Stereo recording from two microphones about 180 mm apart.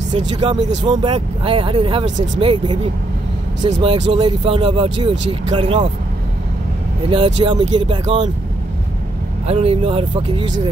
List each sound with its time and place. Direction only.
0.4 s speech: 30° right (ahead or behind)
7.1 s speech: 30° right (ahead or behind)
9.5 s speech: 35° right (ahead or behind)